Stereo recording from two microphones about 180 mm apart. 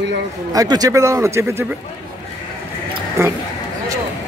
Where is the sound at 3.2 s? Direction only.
15° right (ahead or behind).